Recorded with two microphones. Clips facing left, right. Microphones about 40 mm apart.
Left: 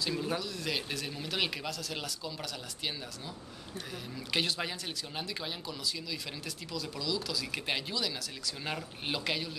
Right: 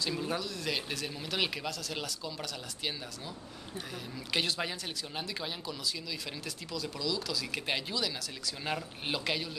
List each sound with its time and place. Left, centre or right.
0.0 s speech: centre
4.3 s speech: centre